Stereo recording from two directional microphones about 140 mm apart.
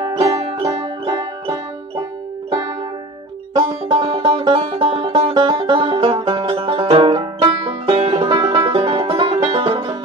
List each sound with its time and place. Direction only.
0.0 s music: 30° right (ahead or behind)
0.5 s music: 45° right (ahead or behind)
3.5 s music: 35° right (ahead or behind)
8.8 s music: 40° right (ahead or behind)